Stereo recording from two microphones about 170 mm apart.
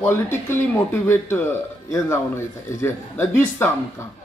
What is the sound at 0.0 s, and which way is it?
A man's voice, 15° left (ahead or behind).